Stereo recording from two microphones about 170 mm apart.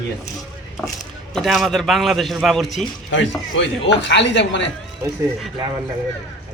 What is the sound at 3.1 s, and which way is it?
Speech, 90° left.